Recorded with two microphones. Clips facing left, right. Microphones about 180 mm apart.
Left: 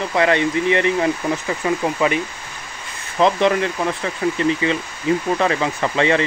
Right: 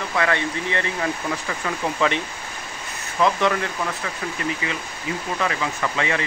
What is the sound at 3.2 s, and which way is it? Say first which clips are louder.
Speech: left 4 dB; 25° left (ahead or behind).